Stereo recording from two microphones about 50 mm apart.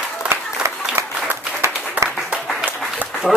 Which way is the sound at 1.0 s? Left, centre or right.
Right.